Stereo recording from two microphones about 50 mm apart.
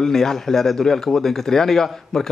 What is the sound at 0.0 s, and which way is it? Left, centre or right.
A man's voice, centre.